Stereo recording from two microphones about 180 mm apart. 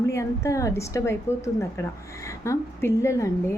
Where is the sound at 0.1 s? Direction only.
15° left (ahead or behind).